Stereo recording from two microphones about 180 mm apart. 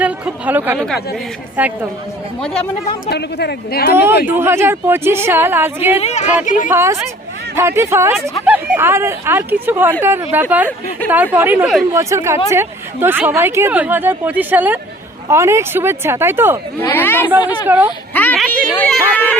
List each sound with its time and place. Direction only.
0.0 s speech: 10° right (ahead or behind)
0.8 s speech: centre (ahead or behind)
1.6 s speech: 10° right (ahead or behind)
2.5 s speech: 35° left (ahead or behind)
3.1 s speech: 65° left (ahead or behind)
4.3 s speech: 15° right (ahead or behind)
6.0 s a woman's voice: 35° left (ahead or behind)
6.7 s speech: 15° right (ahead or behind)
11.9 s speech: 15° right (ahead or behind)
16.8 s speech: 10° left (ahead or behind)
17.4 s speech: 25° left (ahead or behind)
18.1 s a sound: 10° left (ahead or behind)
18.8 s speech: 10° left (ahead or behind)